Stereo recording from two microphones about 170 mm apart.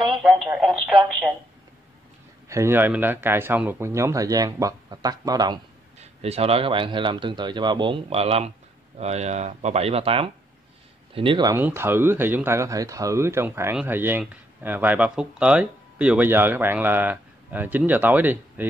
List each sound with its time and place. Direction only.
0.0 s speech: centre (ahead or behind)
2.4 s speech: 15° right (ahead or behind)
5.9 s speech: 35° right (ahead or behind)
11.5 s speech: 15° right (ahead or behind)